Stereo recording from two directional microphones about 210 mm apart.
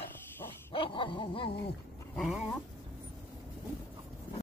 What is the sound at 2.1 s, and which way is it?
Dog, centre (ahead or behind).